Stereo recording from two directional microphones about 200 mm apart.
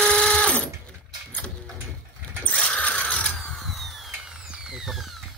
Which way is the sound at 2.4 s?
5° left (ahead or behind).